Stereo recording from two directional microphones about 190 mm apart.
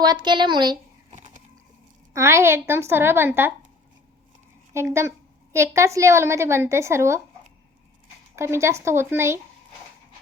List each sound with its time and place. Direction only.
0.0 s speech: 20° right (ahead or behind)
1.1 s a sound: 40° right (ahead or behind)
2.1 s a woman's voice: 15° right (ahead or behind)
4.7 s a woman's voice: 15° right (ahead or behind)
8.4 s a woman's voice: 15° right (ahead or behind)